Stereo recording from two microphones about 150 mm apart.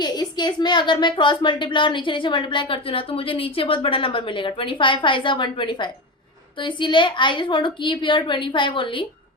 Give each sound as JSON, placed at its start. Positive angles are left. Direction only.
{"t": 0.0, "sound": "a woman's voice", "side_deg": 30}